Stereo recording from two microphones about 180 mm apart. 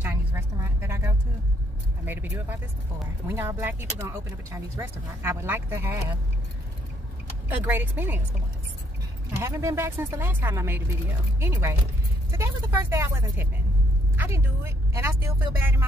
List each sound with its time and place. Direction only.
0.0 s vehicle: 10° right (ahead or behind)
2.0 s speech: 10° right (ahead or behind)
7.4 s speech: 10° right (ahead or behind)
9.4 s a woman's voice: 15° right (ahead or behind)